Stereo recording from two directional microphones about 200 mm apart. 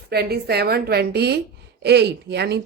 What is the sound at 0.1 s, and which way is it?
A woman's voice, 55° right (ahead or behind).